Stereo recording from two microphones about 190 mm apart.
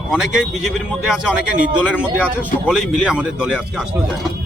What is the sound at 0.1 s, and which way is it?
Speech, centre (ahead or behind).